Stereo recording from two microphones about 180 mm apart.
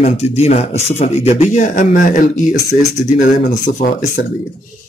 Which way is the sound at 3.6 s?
40° left (ahead or behind).